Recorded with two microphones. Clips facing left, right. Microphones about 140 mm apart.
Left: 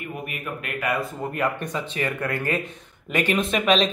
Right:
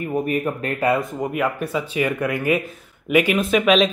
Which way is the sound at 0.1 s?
35° right (ahead or behind).